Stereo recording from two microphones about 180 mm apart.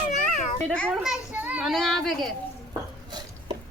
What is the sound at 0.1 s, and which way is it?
Children playing, 40° left (ahead or behind).